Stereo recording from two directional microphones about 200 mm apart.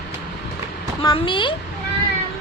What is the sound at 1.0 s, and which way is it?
Speech, 25° left (ahead or behind).